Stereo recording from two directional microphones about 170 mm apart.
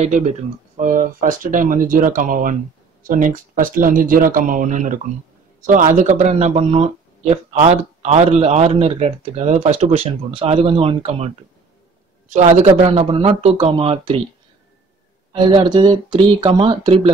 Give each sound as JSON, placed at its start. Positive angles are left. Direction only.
{"t": 0.0, "sound": "speech", "side_deg": -40}
{"t": 12.4, "sound": "speech", "side_deg": -30}
{"t": 15.3, "sound": "speech", "side_deg": -25}